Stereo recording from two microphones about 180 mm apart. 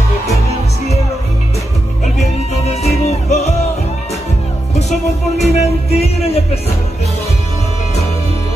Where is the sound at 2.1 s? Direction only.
35° left (ahead or behind).